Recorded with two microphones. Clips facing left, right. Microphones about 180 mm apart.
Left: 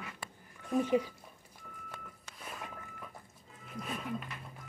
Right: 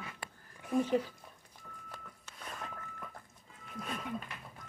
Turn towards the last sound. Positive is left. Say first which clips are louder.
# left 1 dB
turn(degrees=0)  # may be behind; listen again after turning